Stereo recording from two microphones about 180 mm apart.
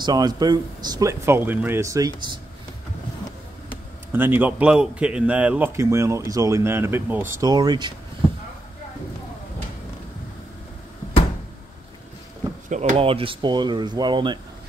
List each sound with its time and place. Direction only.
0.0 s speech: 20° right (ahead or behind)
4.1 s a man's voice: 10° right (ahead or behind)
12.6 s speech: 45° right (ahead or behind); by 14.4 s 25° right (ahead or behind)